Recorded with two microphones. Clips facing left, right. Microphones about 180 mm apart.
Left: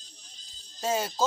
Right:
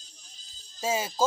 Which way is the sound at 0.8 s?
5° right (ahead or behind).